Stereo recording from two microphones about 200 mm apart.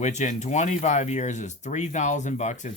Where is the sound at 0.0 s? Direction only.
35° left (ahead or behind).